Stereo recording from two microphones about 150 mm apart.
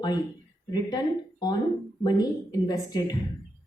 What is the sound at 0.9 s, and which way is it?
A woman's voice, 30° left (ahead or behind).